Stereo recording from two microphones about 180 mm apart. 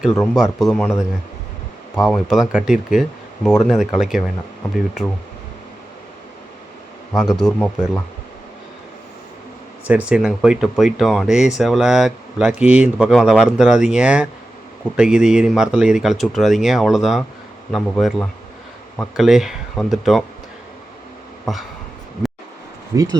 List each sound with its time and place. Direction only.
0.3 s speech: centre (ahead or behind)
7.1 s speech: centre (ahead or behind)
9.8 s speech: 5° right (ahead or behind)
21.5 s speech: centre (ahead or behind)
22.9 s speech: 20° right (ahead or behind)